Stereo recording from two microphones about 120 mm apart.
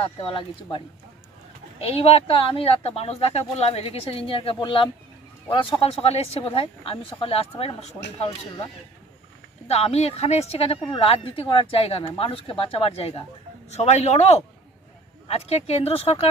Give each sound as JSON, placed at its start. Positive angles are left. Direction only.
{"t": 0.0, "sound": "speech", "side_deg": 50}
{"t": 1.8, "sound": "speech", "side_deg": 55}
{"t": 9.7, "sound": "speech", "side_deg": 60}
{"t": 13.7, "sound": "speech", "side_deg": 70}